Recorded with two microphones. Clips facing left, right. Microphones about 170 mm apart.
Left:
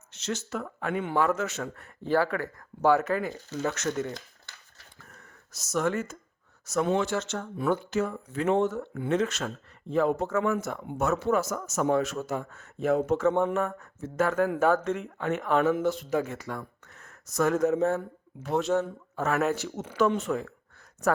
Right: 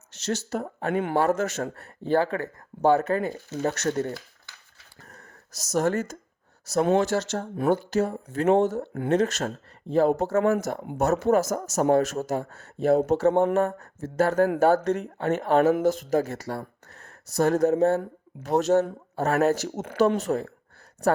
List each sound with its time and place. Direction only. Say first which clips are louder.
0.3 s a man's voice: right 4 dB; 40° right (ahead or behind)
4.9 s a sound: right 5 dB; 40° right (ahead or behind)
6.8 s a man's voice: right 5 dB; 40° right (ahead or behind)
20.1 s a man's voice: right 3 dB; 35° right (ahead or behind)